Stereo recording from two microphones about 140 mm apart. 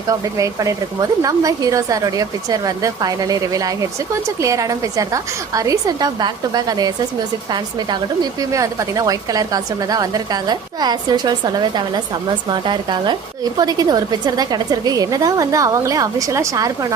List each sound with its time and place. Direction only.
0.1 s speech: 25° right (ahead or behind)